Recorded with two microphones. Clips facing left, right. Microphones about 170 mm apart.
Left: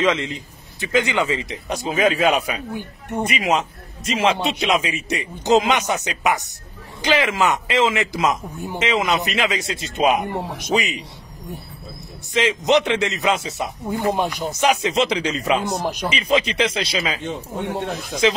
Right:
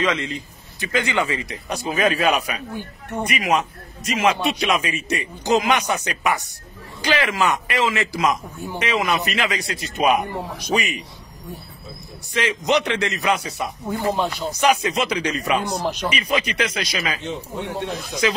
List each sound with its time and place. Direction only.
0.0 s a man's voice: 20° left (ahead or behind)
12.4 s a man's voice: 20° left (ahead or behind)
13.8 s a man's voice: 15° left (ahead or behind)
15.8 s speech: 10° left (ahead or behind)
16.1 s a man's voice: 25° left (ahead or behind)
17.2 s speech: 50° left (ahead or behind)